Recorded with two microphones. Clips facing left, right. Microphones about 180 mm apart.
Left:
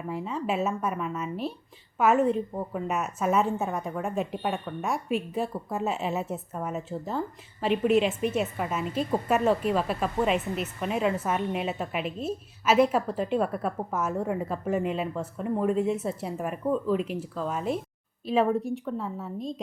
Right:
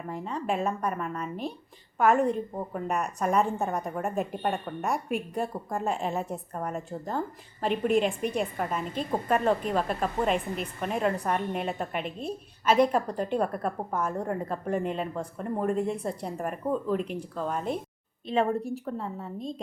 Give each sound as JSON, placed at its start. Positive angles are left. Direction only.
{"t": 0.1, "sound": "a woman's voice", "side_deg": 5}